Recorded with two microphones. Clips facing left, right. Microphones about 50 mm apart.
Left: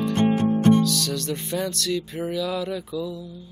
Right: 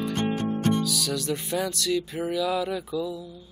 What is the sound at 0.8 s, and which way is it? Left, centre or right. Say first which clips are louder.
Music: left 3 dB; centre.